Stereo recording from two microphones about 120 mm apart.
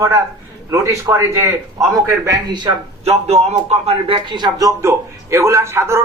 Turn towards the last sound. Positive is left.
turn(degrees=-20)  # may be behind; listen again after turning